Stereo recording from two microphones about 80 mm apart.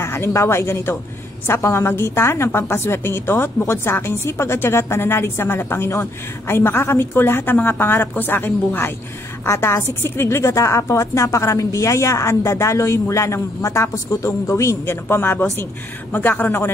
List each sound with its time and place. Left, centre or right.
0.0 s a woman's voice: left